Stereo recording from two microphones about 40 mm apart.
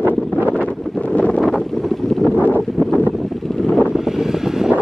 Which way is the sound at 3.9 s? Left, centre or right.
Centre.